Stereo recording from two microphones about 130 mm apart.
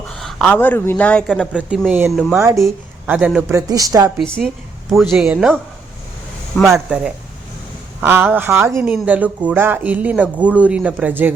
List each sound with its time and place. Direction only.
0.1 s speech: centre (ahead or behind)
1.7 s speech: 5° right (ahead or behind)
2.4 s speech: 25° right (ahead or behind)
3.1 s speech: 10° right (ahead or behind)
3.5 s speech: 25° right (ahead or behind)
4.2 s speech: 5° left (ahead or behind)
6.6 s speech: centre (ahead or behind)
8.0 s speech: 20° right (ahead or behind)